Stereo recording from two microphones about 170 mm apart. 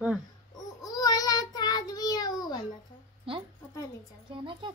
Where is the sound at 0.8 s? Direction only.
20° left (ahead or behind).